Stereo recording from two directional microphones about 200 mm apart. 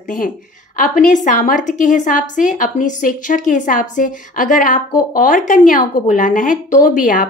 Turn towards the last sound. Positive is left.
turn(degrees=40)  # may be behind; listen again after turning